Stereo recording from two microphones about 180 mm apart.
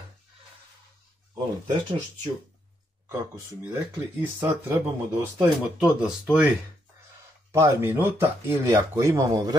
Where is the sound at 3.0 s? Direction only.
15° right (ahead or behind).